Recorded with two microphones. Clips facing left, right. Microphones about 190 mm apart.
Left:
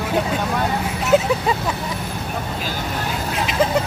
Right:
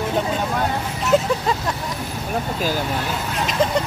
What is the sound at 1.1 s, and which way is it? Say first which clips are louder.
Speech: left 2 dB; 5° left (ahead or behind).